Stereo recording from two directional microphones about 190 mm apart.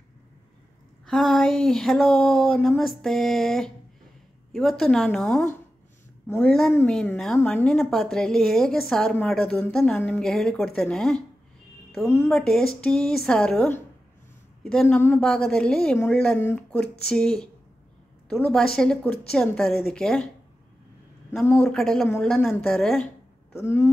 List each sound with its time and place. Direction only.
1.0 s a woman's voice: centre (ahead or behind)
6.4 s a woman's voice: centre (ahead or behind)
12.3 s a woman's voice: centre (ahead or behind)
21.5 s a woman's voice: 5° left (ahead or behind)
23.5 s speech: 15° left (ahead or behind)